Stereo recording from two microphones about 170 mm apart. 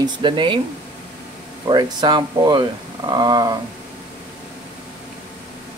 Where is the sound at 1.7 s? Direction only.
25° right (ahead or behind).